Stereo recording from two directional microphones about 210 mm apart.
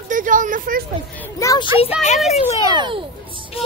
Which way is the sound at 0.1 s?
40° right (ahead or behind).